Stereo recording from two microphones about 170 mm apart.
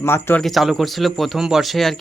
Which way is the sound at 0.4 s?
Centre (ahead or behind).